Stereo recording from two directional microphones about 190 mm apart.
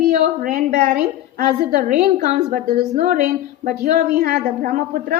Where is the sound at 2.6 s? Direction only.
50° right (ahead or behind).